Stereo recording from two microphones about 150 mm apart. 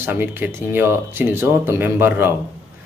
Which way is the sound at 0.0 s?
15° right (ahead or behind).